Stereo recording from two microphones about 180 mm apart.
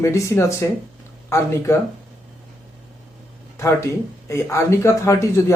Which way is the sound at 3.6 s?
15° left (ahead or behind).